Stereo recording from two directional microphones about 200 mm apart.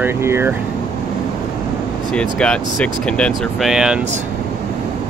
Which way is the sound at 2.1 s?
5° left (ahead or behind).